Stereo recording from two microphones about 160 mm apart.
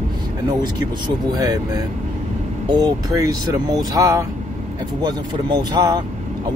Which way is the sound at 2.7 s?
25° right (ahead or behind).